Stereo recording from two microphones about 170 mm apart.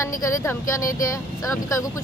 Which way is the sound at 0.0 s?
15° left (ahead or behind).